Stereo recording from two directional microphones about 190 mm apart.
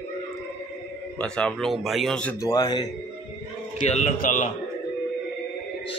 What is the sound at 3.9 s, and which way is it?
Speech, 40° left (ahead or behind).